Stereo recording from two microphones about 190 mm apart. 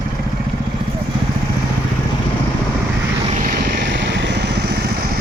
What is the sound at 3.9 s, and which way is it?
Vehicle, 70° right (ahead or behind).